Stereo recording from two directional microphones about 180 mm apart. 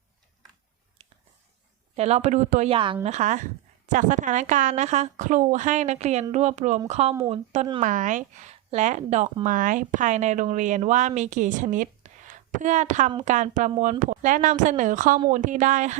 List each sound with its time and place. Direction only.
2.0 s speech: 35° right (ahead or behind)
2.6 s speech: 30° right (ahead or behind); by 16.0 s 45° right (ahead or behind)